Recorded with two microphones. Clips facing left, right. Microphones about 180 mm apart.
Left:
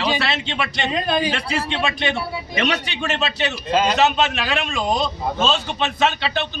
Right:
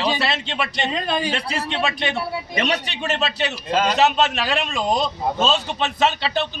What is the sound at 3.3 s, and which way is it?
Speech, 35° right (ahead or behind).